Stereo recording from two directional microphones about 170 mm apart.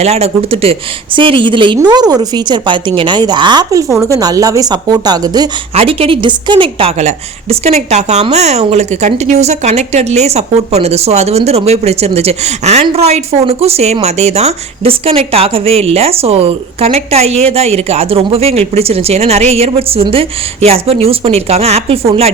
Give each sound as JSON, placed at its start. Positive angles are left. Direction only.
{"t": 0.0, "sound": "a woman's voice", "side_deg": -40}
{"t": 5.7, "sound": "a woman's voice", "side_deg": -35}